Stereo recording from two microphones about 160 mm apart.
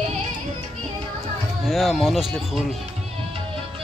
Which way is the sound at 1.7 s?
Centre (ahead or behind).